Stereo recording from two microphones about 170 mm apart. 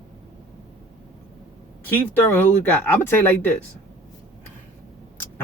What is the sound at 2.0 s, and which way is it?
Speech, 10° left (ahead or behind).